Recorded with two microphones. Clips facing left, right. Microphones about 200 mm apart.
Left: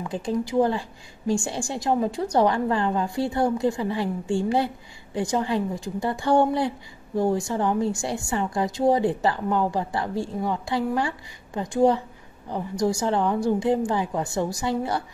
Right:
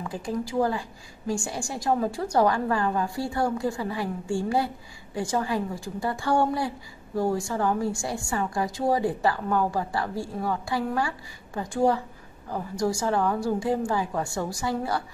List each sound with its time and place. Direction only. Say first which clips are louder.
0.1 s a woman's voice: left 5 dB; 20° left (ahead or behind)